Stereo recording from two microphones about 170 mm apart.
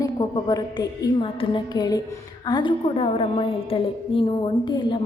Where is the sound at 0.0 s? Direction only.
20° left (ahead or behind).